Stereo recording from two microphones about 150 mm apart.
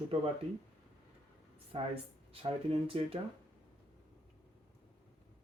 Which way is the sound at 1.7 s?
40° right (ahead or behind).